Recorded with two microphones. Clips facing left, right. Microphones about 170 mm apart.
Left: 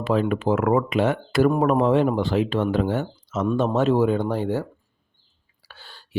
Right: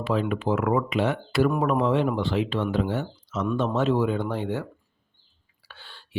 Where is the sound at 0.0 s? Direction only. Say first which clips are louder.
Left 4 dB; 45° left (ahead or behind).